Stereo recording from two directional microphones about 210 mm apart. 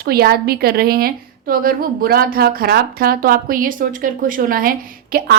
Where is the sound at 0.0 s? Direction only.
45° right (ahead or behind).